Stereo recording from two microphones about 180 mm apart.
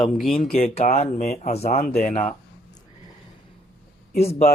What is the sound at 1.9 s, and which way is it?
Speech, 50° left (ahead or behind).